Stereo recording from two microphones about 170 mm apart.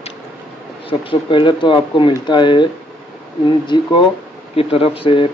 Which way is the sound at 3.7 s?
30° left (ahead or behind).